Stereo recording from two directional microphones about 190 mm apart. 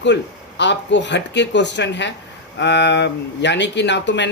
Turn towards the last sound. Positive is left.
turn(degrees=70)  # may be behind; listen again after turning